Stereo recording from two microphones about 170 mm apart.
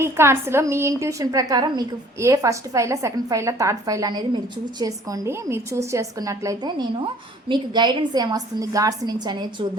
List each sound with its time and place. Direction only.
0.0 s a woman's voice: 15° right (ahead or behind)